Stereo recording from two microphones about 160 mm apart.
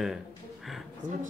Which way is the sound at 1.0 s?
55° right (ahead or behind).